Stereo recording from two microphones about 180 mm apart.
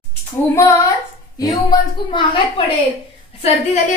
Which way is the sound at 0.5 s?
15° left (ahead or behind).